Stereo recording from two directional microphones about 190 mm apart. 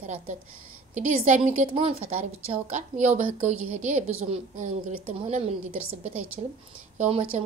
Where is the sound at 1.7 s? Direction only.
30° right (ahead or behind).